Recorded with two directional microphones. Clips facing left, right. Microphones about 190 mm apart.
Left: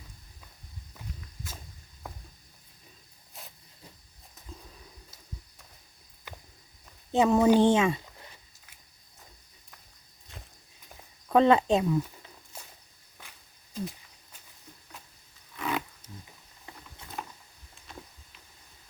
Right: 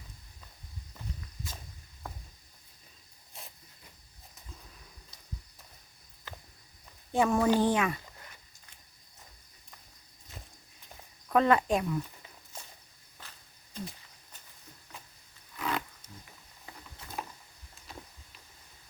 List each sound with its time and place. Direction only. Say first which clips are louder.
6.3 s walk: left 1 dB; 10° left (ahead or behind)
7.1 s speech: left 4 dB; 20° left (ahead or behind)
11.3 s speech: left 4 dB; 25° left (ahead or behind)
12.5 s walk: even; 10° left (ahead or behind)
15.5 s roaring cats: left 2 dB; 5° left (ahead or behind)
17.2 s a sound: even; 5° right (ahead or behind)